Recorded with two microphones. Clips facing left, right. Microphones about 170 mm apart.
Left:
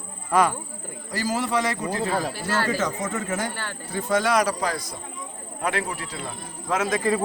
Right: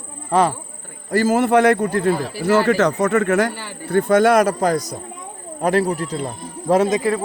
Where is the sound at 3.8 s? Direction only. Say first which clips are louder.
Right 9 dB; 60° right (ahead or behind); by 6.8 s 40° right (ahead or behind).